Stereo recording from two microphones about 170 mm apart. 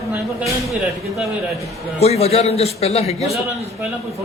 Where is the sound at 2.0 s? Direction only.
40° left (ahead or behind).